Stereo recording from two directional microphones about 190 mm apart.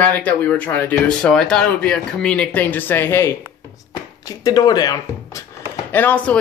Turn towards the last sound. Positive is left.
turn(degrees=10)  # may be behind; listen again after turning